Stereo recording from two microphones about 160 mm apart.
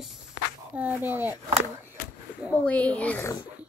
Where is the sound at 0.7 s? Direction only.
10° right (ahead or behind).